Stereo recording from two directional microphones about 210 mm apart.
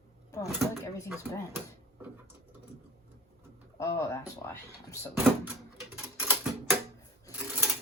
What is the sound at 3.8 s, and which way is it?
Speech, 15° left (ahead or behind).